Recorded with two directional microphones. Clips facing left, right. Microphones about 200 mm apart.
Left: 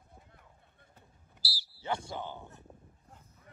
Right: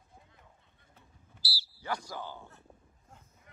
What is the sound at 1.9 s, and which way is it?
Speech, 25° left (ahead or behind).